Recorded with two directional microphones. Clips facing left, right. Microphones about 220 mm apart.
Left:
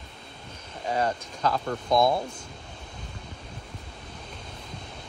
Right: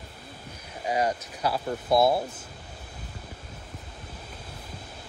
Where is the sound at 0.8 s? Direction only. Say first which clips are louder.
Right 1 dB; 10° right (ahead or behind).